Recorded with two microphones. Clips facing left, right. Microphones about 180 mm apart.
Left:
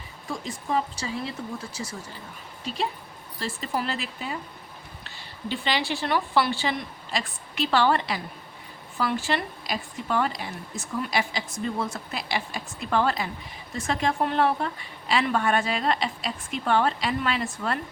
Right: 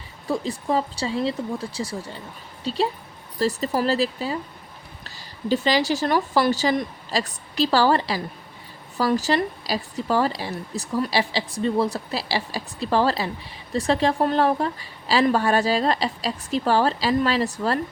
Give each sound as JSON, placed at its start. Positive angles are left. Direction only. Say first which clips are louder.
{"t": 0.3, "sound": "speech", "louder": "right 6 dB", "side_deg": -35}